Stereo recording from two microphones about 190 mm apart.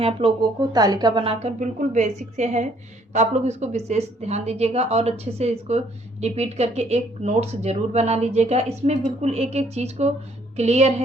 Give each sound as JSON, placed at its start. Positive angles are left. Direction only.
{"t": 0.0, "sound": "speech", "side_deg": -30}